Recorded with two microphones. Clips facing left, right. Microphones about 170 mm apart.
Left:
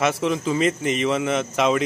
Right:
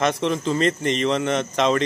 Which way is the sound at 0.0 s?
5° left (ahead or behind).